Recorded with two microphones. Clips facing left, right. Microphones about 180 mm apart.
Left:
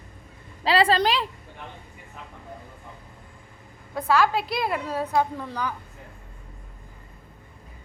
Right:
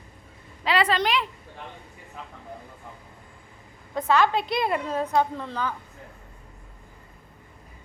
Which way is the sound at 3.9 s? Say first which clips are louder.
Even; 5° left (ahead or behind).